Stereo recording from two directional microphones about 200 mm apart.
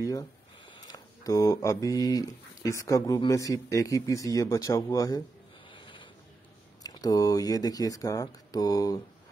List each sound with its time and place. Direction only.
0.0 s speech: 15° left (ahead or behind)
5.7 s a sound: 25° left (ahead or behind)
6.8 s speech: 20° left (ahead or behind)